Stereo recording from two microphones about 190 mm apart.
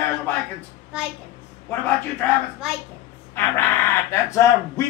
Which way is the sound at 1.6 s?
10° left (ahead or behind).